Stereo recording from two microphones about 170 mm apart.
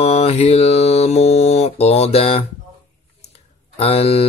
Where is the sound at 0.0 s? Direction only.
40° left (ahead or behind).